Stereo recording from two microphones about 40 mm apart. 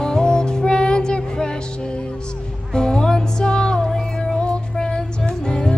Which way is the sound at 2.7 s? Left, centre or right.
Centre.